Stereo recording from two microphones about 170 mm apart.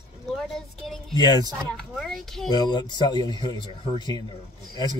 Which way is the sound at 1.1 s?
25° left (ahead or behind).